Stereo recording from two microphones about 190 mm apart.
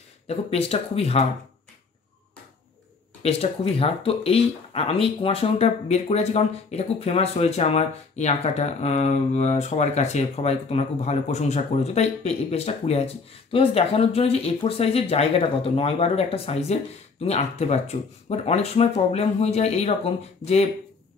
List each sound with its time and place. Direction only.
0.3 s speech: 30° left (ahead or behind)
3.2 s speech: 30° left (ahead or behind)